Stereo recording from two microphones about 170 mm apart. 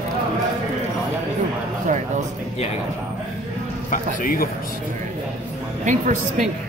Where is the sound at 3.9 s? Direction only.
55° left (ahead or behind).